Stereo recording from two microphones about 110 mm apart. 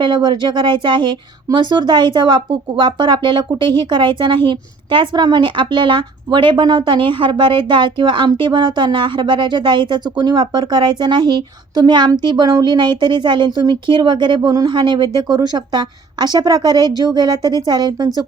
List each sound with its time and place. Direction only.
0.0 s a woman's voice: 45° right (ahead or behind)